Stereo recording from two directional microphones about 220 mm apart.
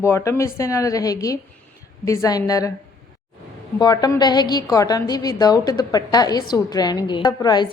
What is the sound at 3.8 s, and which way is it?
A woman's voice, 20° left (ahead or behind).